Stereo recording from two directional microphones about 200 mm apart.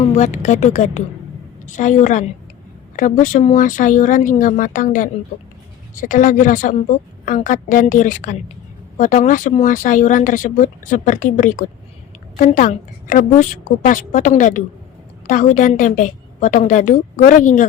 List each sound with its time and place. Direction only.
0.0 s speech: 35° left (ahead or behind)